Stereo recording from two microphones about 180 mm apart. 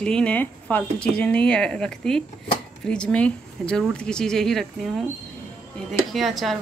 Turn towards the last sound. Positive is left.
turn(degrees=0)  # may be behind; listen again after turning